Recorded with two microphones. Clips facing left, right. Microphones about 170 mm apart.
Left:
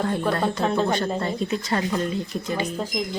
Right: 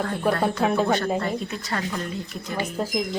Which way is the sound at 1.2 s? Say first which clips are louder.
Left 2 dB; 25° left (ahead or behind).